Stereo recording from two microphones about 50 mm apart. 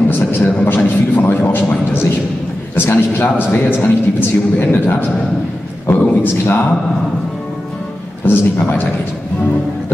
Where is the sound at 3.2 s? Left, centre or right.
Left.